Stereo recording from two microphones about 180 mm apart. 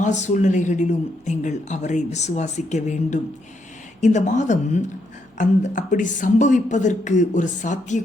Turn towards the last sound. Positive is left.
turn(degrees=40)  # may be behind; listen again after turning